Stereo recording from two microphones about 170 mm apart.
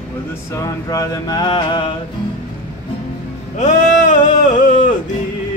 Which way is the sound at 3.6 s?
45° left (ahead or behind).